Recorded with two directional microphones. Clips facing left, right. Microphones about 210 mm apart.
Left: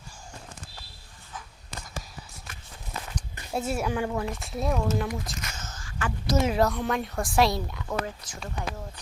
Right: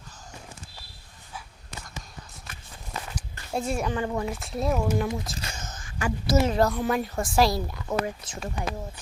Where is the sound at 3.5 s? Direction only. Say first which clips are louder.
Even; 5° left (ahead or behind).